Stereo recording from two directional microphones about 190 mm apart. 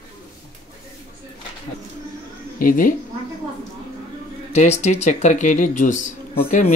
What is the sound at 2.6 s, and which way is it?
Speech, 45° left (ahead or behind).